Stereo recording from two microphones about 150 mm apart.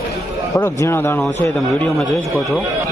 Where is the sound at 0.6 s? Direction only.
20° left (ahead or behind).